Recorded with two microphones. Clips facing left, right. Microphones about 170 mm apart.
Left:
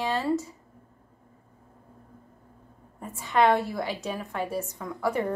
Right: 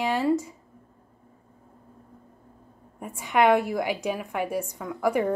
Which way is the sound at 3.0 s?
15° right (ahead or behind).